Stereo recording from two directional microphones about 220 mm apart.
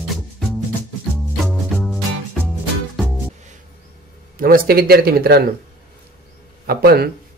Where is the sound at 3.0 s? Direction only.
Centre (ahead or behind).